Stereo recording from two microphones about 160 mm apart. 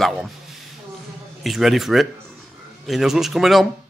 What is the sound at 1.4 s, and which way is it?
Speech, centre (ahead or behind).